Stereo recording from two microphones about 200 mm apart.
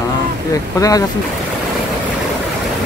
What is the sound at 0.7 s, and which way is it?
Speech, 15° left (ahead or behind).